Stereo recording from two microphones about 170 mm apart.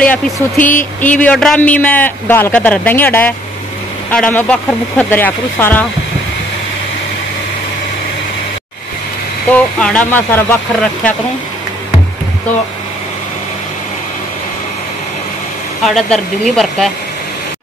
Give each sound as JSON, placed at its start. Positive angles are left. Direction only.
{"t": 0.6, "sound": "a sound", "side_deg": 50}
{"t": 1.0, "sound": "a man's voice", "side_deg": 10}
{"t": 9.5, "sound": "a man's voice", "side_deg": 5}
{"t": 15.8, "sound": "speech", "side_deg": 0}